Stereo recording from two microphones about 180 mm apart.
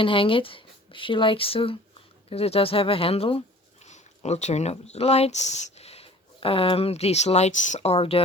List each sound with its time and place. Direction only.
0.0 s speech: 30° left (ahead or behind)